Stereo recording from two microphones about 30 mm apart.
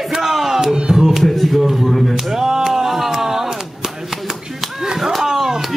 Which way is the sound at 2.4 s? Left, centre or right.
Centre.